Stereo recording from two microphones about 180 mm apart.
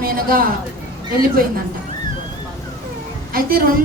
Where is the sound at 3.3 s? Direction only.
55° right (ahead or behind).